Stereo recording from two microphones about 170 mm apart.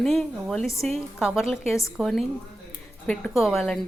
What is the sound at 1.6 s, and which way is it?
Speech, 20° left (ahead or behind).